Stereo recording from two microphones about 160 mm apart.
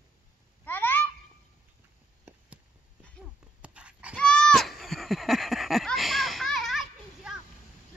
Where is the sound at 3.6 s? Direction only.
5° right (ahead or behind).